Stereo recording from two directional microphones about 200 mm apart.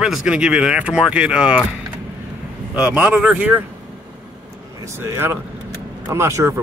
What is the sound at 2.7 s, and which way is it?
Speech, 5° right (ahead or behind).